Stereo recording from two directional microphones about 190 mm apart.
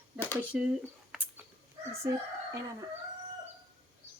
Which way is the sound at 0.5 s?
5° right (ahead or behind).